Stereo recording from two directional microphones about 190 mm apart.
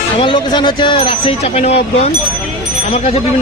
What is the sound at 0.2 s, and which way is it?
Speech, 25° left (ahead or behind).